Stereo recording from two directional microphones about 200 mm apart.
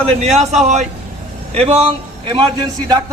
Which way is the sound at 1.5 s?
30° right (ahead or behind).